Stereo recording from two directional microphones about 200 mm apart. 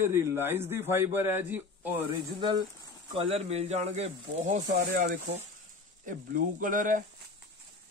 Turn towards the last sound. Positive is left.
turn(degrees=-40)  # may be behind; listen again after turning